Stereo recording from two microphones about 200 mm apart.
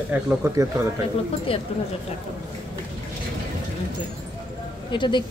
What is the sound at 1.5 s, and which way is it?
Speech, 30° left (ahead or behind).